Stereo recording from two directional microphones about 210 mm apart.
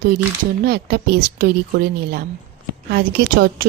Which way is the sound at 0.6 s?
50° right (ahead or behind).